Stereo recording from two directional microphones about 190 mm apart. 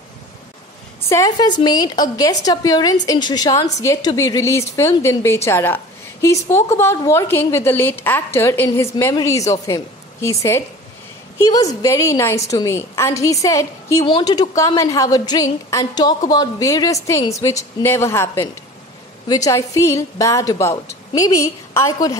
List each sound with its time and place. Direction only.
1.0 s a woman's voice: 15° left (ahead or behind)